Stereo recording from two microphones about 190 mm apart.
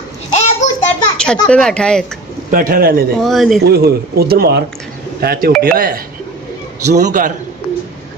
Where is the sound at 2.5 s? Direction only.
45° right (ahead or behind).